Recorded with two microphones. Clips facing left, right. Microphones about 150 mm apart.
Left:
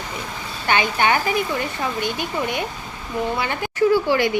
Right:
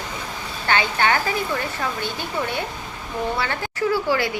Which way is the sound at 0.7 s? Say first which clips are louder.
Left 1 dB; 15° left (ahead or behind).